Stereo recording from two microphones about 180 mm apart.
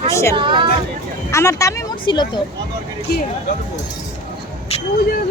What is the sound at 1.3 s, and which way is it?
Speech, 15° left (ahead or behind).